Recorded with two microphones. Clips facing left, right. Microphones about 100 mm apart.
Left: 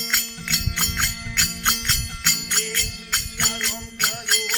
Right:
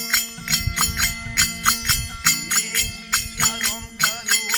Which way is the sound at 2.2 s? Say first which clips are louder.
Right 3 dB; 55° right (ahead or behind).